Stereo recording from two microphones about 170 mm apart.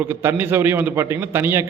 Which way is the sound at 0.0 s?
15° right (ahead or behind).